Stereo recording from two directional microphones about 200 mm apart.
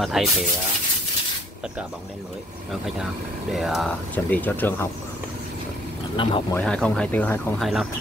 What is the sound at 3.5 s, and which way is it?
Speech, centre (ahead or behind).